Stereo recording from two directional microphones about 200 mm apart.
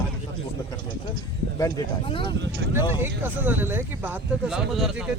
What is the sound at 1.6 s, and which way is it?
Speech, 20° left (ahead or behind).